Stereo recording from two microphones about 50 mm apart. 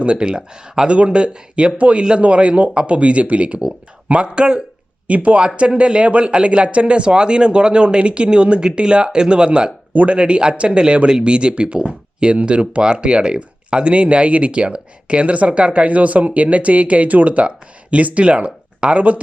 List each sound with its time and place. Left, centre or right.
0.0 s speech: right
9.9 s speech: right
10.2 s speech: right